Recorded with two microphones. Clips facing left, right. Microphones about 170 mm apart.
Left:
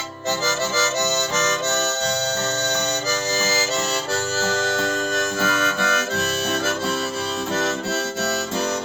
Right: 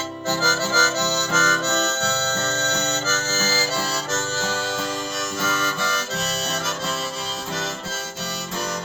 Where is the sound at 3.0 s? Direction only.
15° left (ahead or behind).